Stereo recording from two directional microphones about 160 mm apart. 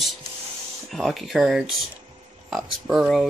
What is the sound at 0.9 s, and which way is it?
Speech, centre (ahead or behind).